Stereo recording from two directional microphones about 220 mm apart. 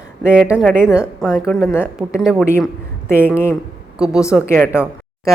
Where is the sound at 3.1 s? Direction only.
10° left (ahead or behind).